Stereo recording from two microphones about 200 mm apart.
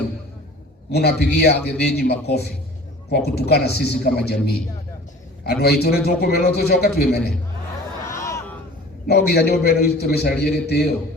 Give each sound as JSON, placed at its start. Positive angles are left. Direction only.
{"t": 0.9, "sound": "a man's voice", "side_deg": 55}
{"t": 5.4, "sound": "a man's voice", "side_deg": 55}
{"t": 8.1, "sound": "a sound", "side_deg": 15}
{"t": 9.0, "sound": "a man's voice", "side_deg": 55}